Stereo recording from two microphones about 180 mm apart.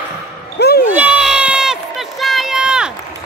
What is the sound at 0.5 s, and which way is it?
Basketball bounce, 65° left (ahead or behind).